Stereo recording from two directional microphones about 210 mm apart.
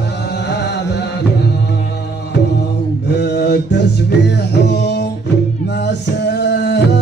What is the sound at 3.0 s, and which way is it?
Music, 55° left (ahead or behind).